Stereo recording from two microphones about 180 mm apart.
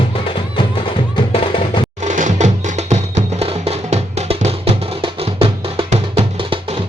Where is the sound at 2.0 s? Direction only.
45° right (ahead or behind).